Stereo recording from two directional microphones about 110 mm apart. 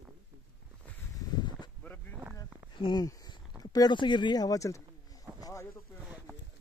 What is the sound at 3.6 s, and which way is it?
Speech, 40° left (ahead or behind).